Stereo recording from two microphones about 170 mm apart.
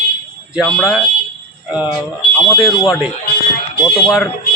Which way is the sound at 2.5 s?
Centre (ahead or behind).